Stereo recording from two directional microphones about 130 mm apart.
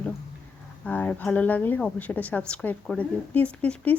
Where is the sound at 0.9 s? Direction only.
15° left (ahead or behind).